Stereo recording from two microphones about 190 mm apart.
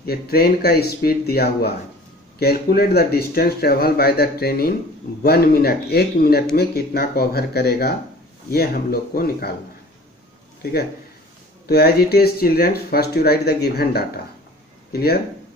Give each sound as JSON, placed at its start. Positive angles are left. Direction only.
{"t": 0.0, "sound": "speech", "side_deg": 55}
{"t": 10.6, "sound": "a man's voice", "side_deg": 55}